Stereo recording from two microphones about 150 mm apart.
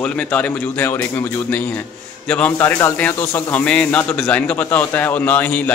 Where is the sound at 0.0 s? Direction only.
10° left (ahead or behind).